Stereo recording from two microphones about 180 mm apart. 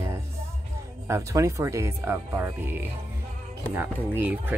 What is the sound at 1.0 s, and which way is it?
Speech, 15° right (ahead or behind).